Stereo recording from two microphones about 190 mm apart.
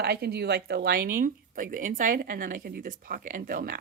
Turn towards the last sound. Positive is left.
turn(degrees=-45)  # may be behind; listen again after turning